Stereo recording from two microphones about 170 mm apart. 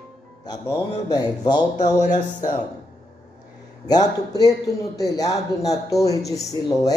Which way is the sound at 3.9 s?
20° left (ahead or behind).